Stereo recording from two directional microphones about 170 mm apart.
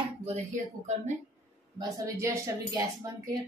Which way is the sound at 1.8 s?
20° right (ahead or behind).